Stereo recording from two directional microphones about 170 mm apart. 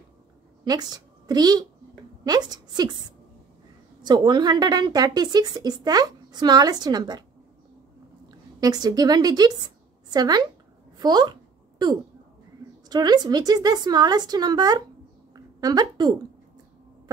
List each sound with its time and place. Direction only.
0.7 s a woman's voice: 25° right (ahead or behind)
4.0 s speech: 25° right (ahead or behind)
8.3 s a woman's voice: 25° right (ahead or behind)
12.9 s speech: 25° right (ahead or behind)
15.3 s a sound: 20° right (ahead or behind)